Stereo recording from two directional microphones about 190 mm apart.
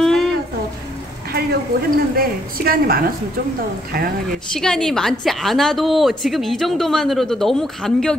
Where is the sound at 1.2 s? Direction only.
55° right (ahead or behind).